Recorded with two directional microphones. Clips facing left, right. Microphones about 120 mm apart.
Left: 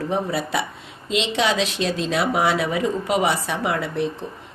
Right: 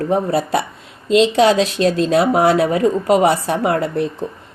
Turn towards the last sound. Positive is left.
turn(degrees=-45)  # may be behind; listen again after turning